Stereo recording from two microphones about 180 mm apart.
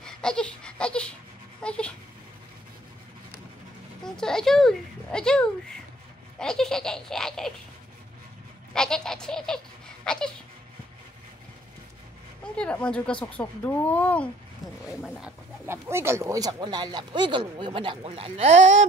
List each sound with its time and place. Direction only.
0.0 s a sound: 5° left (ahead or behind)
1.6 s speech: 5° left (ahead or behind)
4.0 s speech: 5° left (ahead or behind)
6.3 s baby laughter: 5° left (ahead or behind)
8.7 s baby laughter: 5° left (ahead or behind)
12.5 s speech: 5° left (ahead or behind)
15.1 s speech: 10° right (ahead or behind); by 18.9 s 40° right (ahead or behind)